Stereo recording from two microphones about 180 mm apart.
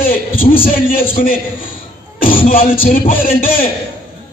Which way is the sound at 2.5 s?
50° left (ahead or behind).